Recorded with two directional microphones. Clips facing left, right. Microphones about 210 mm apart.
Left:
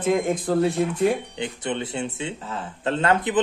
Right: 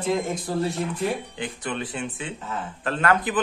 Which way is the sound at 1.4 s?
25° left (ahead or behind).